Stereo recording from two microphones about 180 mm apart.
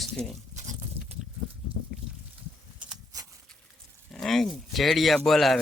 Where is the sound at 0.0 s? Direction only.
Centre (ahead or behind).